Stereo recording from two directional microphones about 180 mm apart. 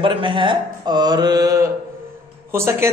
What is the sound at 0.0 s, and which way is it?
Mantra, 30° right (ahead or behind).